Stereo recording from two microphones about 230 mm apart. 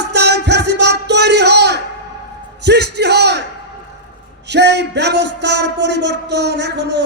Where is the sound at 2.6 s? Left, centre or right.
Right.